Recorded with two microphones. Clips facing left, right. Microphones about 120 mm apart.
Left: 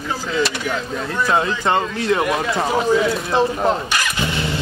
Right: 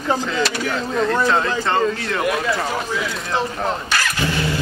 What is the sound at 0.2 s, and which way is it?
Speech, 5° left (ahead or behind).